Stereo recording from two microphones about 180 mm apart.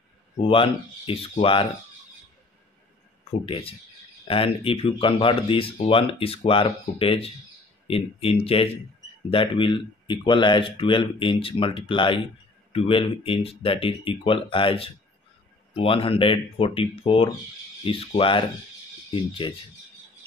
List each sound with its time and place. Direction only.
0.4 s speech: 30° left (ahead or behind)
3.3 s speech: 35° left (ahead or behind)
19.4 s speech: 30° left (ahead or behind)